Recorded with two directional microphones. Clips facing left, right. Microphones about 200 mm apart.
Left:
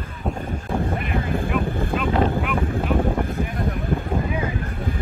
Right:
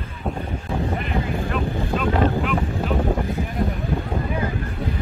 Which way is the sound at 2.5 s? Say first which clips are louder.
Even; 50° left (ahead or behind).